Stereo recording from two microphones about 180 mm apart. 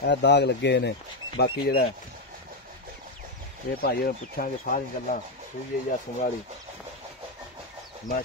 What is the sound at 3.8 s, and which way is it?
Speech, 55° left (ahead or behind).